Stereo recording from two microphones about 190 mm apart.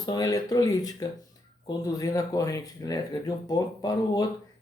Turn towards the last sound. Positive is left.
turn(degrees=20)  # may be behind; listen again after turning